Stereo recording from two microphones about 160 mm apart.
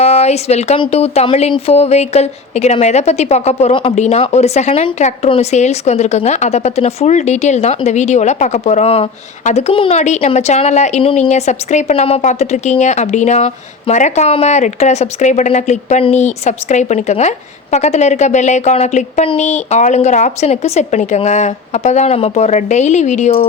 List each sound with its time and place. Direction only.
0.0 s a woman's voice: 40° left (ahead or behind)
3.9 s speech: 45° left (ahead or behind)